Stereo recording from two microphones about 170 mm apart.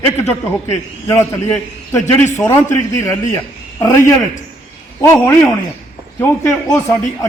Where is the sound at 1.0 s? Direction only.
15° left (ahead or behind).